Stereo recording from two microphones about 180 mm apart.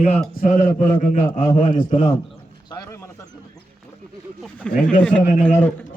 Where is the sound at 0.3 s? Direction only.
50° left (ahead or behind).